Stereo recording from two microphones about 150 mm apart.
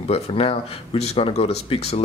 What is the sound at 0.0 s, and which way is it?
Speech, 40° left (ahead or behind).